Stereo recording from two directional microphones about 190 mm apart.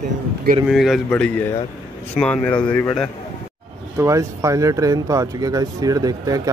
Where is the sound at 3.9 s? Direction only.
15° right (ahead or behind).